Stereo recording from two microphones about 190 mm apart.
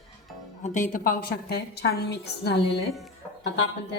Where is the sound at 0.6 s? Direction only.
40° left (ahead or behind); by 3.9 s 70° left (ahead or behind).